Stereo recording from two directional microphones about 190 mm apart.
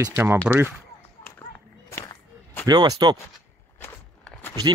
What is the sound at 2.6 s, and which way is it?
Speech, 20° right (ahead or behind).